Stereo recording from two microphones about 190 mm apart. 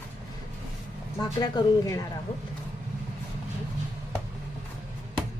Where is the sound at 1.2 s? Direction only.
20° left (ahead or behind).